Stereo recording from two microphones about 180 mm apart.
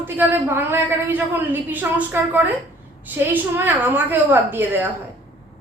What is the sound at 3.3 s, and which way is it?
A woman's voice, 10° right (ahead or behind).